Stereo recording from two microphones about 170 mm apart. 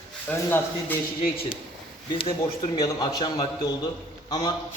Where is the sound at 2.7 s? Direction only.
25° left (ahead or behind).